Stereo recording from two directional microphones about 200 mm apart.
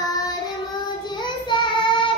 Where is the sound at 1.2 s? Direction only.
25° left (ahead or behind).